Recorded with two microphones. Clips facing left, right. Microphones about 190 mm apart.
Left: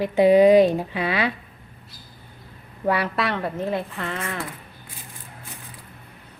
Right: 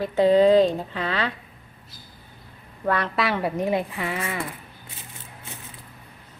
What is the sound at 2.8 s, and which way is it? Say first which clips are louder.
Speech: left 1 dB; 10° left (ahead or behind).